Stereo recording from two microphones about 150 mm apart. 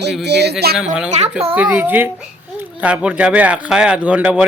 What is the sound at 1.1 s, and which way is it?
Speech, 45° right (ahead or behind).